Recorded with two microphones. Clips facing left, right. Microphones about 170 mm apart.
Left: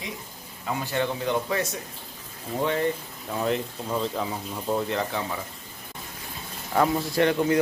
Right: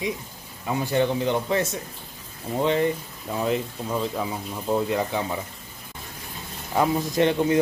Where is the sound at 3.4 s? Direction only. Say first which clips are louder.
Right 1 dB; 5° right (ahead or behind).